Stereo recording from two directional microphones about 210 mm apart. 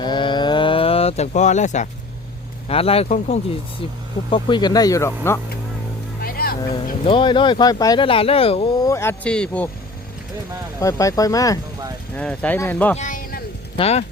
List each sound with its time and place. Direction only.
0.0 s a sound: 20° left (ahead or behind)
2.6 s speech: 30° left (ahead or behind); by 5.4 s 10° left (ahead or behind)
6.2 s vehicle: 45° left (ahead or behind)
7.1 s speech: 25° left (ahead or behind)
8.9 s speech: 10° left (ahead or behind)
10.8 s speech: 15° left (ahead or behind)
13.0 s a sound: 40° left (ahead or behind)
13.7 s speech: 30° left (ahead or behind)